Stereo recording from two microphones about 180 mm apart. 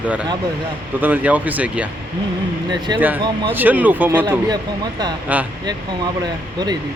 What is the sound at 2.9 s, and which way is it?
Speech, 25° right (ahead or behind).